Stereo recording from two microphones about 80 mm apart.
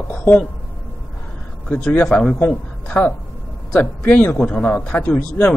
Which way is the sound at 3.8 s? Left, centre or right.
Left.